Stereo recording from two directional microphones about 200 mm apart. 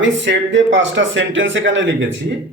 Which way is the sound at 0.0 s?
65° right (ahead or behind).